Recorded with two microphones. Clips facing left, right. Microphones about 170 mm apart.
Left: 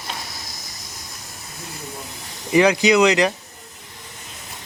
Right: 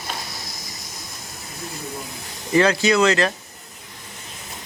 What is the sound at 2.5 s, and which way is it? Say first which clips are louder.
Speech: left 2 dB; 15° left (ahead or behind).